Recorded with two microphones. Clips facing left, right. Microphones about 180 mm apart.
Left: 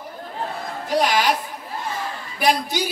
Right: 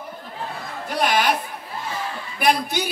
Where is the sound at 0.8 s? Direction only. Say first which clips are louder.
Left 1 dB; 55° right (ahead or behind).